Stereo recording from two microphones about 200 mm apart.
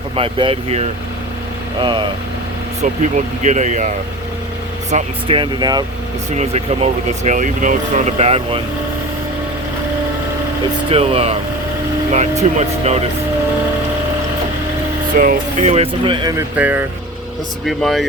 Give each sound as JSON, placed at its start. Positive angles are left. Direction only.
{"t": 0.2, "sound": "speech", "side_deg": -25}
{"t": 3.4, "sound": "speech", "side_deg": -35}
{"t": 6.3, "sound": "speech", "side_deg": -30}
{"t": 10.8, "sound": "speech", "side_deg": -30}
{"t": 15.1, "sound": "speech", "side_deg": -45}
{"t": 15.6, "sound": "speech", "side_deg": -30}
{"t": 16.6, "sound": "speech", "side_deg": -10}